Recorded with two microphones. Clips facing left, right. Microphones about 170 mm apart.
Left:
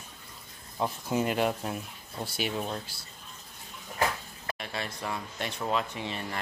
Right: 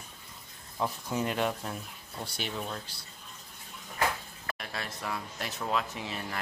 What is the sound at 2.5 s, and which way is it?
Speech, 25° left (ahead or behind).